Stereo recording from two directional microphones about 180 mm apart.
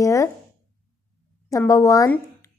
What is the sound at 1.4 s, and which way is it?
Speech, 15° left (ahead or behind).